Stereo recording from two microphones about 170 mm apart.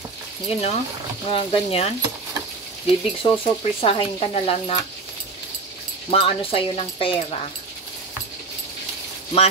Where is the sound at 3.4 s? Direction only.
30° left (ahead or behind).